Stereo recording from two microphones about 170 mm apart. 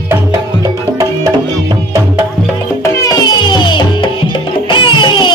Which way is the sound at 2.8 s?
20° left (ahead or behind).